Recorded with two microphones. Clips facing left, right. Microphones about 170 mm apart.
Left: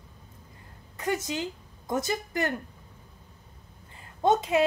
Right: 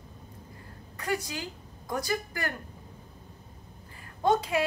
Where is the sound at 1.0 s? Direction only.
20° left (ahead or behind).